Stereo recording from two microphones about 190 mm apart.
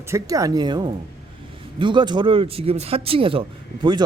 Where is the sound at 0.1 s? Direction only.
20° right (ahead or behind).